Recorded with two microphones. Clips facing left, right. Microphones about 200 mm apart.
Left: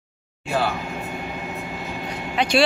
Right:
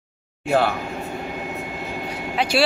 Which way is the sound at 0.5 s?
55° right (ahead or behind).